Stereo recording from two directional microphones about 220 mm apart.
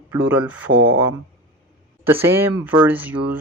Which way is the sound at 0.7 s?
65° right (ahead or behind).